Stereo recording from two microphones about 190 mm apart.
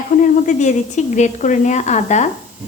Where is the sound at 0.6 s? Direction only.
40° left (ahead or behind).